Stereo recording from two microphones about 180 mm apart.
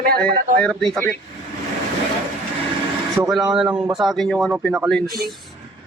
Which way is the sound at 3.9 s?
Centre (ahead or behind).